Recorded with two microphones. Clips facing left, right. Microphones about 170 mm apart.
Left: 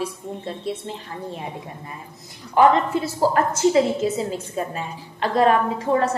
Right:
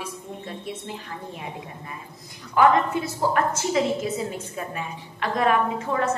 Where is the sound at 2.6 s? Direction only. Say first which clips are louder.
Left 2 dB; 30° left (ahead or behind).